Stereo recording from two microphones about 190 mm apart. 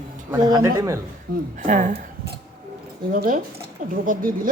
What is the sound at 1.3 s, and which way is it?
Speech, 45° right (ahead or behind).